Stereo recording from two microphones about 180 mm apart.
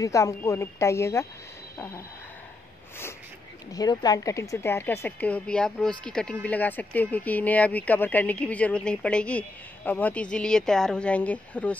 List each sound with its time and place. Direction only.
0.0 s a woman's voice: 15° left (ahead or behind)
3.7 s a woman's voice: 20° left (ahead or behind)